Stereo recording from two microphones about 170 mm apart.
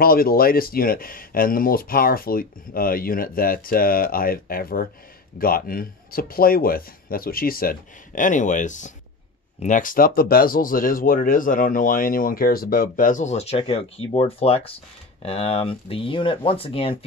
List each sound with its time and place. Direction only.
0.0 s speech: 60° left (ahead or behind); by 17.0 s 30° left (ahead or behind)